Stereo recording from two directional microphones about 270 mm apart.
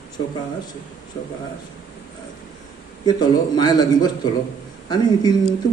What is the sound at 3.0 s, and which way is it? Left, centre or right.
A man's voice, centre.